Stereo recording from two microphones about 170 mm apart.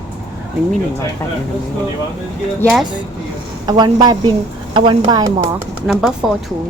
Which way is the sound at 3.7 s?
25° right (ahead or behind).